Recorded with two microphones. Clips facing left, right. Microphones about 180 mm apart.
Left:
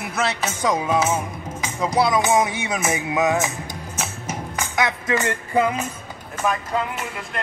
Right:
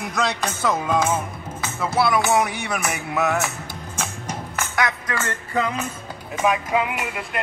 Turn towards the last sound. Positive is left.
turn(degrees=-10)  # may be behind; listen again after turning